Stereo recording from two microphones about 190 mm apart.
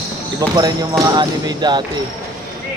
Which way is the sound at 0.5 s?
20° right (ahead or behind).